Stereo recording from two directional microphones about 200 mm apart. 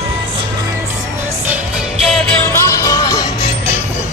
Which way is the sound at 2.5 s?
15° left (ahead or behind).